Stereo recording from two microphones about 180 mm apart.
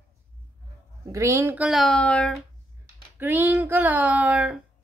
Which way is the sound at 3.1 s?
10° right (ahead or behind).